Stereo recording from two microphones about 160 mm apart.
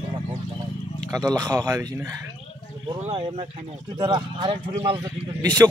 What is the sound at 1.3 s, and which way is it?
Speech, 20° right (ahead or behind).